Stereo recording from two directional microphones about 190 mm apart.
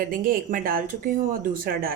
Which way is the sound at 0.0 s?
50° right (ahead or behind).